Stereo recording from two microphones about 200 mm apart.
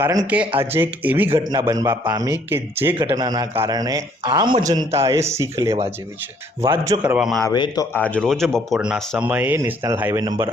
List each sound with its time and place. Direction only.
0.0 s a man's voice: 15° right (ahead or behind)
7.4 s a man's voice: 20° left (ahead or behind)
7.9 s a man's voice: 5° left (ahead or behind); by 10.3 s 15° right (ahead or behind)